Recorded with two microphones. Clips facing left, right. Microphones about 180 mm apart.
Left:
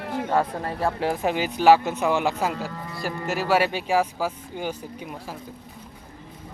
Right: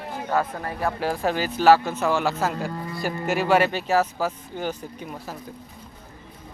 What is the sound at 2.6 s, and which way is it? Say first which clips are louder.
Speech: right 3 dB; centre (ahead or behind).